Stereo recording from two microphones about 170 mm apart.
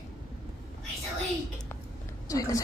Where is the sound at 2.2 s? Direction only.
20° left (ahead or behind).